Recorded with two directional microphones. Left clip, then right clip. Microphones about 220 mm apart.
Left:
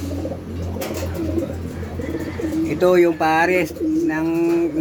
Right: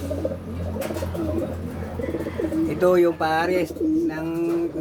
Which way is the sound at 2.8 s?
10° left (ahead or behind).